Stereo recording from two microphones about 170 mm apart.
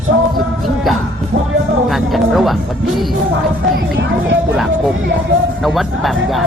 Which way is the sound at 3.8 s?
90° right.